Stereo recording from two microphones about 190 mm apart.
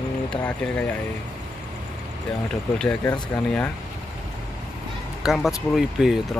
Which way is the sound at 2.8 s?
5° left (ahead or behind).